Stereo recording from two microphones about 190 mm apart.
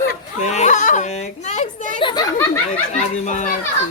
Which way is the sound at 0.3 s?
40° left (ahead or behind).